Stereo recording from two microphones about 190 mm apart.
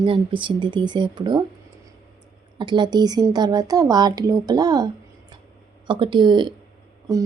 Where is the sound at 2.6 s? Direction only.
25° right (ahead or behind).